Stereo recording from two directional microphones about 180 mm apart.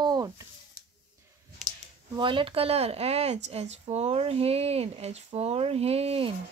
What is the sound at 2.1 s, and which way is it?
Speech, 25° right (ahead or behind).